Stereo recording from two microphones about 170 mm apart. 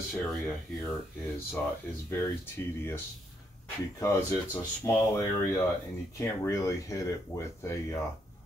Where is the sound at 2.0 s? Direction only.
15° left (ahead or behind).